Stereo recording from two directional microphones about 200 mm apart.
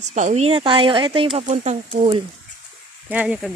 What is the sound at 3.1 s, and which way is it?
Speech, 5° right (ahead or behind).